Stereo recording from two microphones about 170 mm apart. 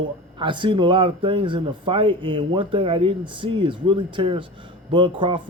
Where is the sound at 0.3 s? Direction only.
30° right (ahead or behind).